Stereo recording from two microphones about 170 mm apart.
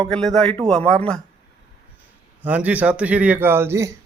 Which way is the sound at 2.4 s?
10° right (ahead or behind).